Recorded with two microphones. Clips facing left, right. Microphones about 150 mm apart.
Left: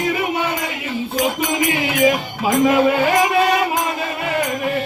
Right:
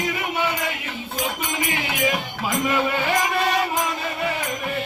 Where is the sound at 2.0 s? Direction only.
90° left.